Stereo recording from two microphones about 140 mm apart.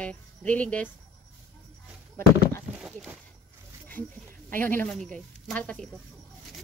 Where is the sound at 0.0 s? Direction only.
10° left (ahead or behind).